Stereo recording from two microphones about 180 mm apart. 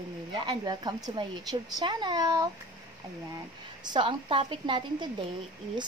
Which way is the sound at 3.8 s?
25° right (ahead or behind).